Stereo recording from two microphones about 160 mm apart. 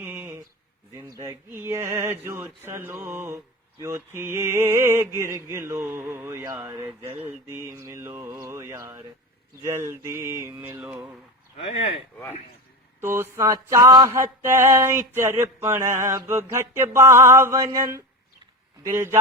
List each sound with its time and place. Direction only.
0.0 s a sound: 10° right (ahead or behind)
0.9 s speech: 20° right (ahead or behind)
11.5 s speech: 40° left (ahead or behind)
13.0 s speech: 15° right (ahead or behind)